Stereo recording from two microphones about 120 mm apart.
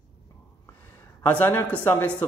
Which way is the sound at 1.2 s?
15° left (ahead or behind).